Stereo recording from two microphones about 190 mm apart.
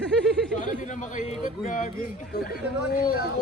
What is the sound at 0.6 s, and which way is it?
A man's voice, 40° left (ahead or behind).